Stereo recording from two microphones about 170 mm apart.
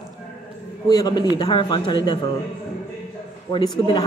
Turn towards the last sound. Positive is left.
turn(degrees=25)  # may be behind; listen again after turning